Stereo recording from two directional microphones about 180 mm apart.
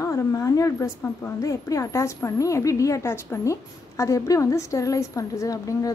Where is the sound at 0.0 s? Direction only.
15° left (ahead or behind).